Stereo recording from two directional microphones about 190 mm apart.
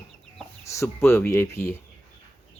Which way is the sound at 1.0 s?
15° left (ahead or behind).